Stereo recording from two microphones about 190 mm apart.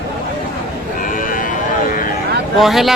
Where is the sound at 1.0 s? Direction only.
45° left (ahead or behind).